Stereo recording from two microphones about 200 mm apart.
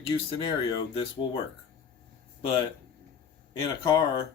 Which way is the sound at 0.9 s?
25° left (ahead or behind).